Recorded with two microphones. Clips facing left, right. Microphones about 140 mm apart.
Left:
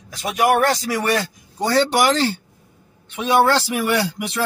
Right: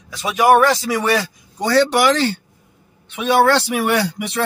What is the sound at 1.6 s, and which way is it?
Speech, 75° right (ahead or behind).